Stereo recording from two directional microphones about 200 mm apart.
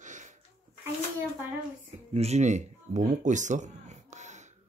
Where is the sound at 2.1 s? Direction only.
30° right (ahead or behind).